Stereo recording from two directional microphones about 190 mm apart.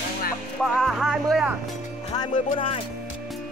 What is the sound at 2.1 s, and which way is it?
Speech, 25° left (ahead or behind).